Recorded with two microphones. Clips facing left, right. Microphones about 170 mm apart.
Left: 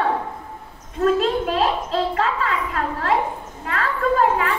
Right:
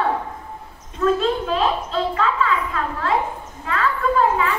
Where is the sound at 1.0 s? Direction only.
40° left (ahead or behind).